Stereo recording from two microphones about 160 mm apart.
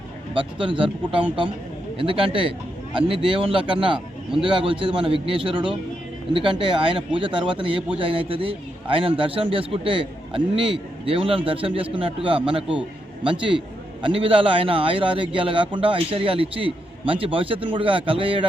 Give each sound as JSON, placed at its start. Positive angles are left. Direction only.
{"t": 0.3, "sound": "a man's voice", "side_deg": -30}